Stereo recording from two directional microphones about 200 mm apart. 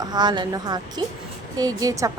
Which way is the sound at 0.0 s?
20° right (ahead or behind).